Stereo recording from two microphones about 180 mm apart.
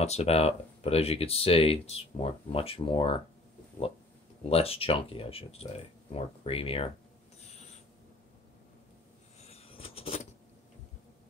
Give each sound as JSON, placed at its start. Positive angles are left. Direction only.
{"t": 0.0, "sound": "speech", "side_deg": 35}
{"t": 4.4, "sound": "speech", "side_deg": 35}
{"t": 9.4, "sound": "a sound", "side_deg": 35}